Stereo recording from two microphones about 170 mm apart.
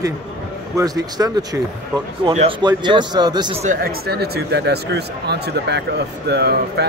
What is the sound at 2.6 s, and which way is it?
Speech, 25° right (ahead or behind).